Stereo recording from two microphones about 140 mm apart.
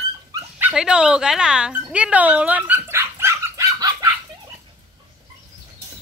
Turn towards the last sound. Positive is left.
turn(degrees=-25)  # may be behind; listen again after turning